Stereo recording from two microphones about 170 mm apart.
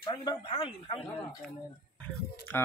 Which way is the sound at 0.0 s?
25° left (ahead or behind).